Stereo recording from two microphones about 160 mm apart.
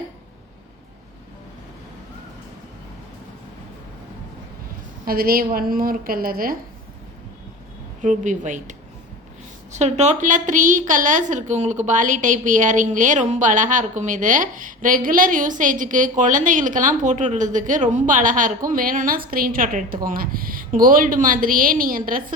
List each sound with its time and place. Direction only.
5.0 s a woman's voice: 70° right (ahead or behind)
8.0 s a woman's voice: 50° right (ahead or behind)
9.7 s a woman's voice: 45° right (ahead or behind); by 22.2 s 60° right (ahead or behind)